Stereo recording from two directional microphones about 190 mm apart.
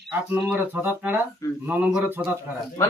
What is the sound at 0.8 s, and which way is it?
Speech, 10° right (ahead or behind).